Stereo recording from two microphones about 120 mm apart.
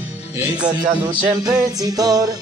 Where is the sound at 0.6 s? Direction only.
35° right (ahead or behind).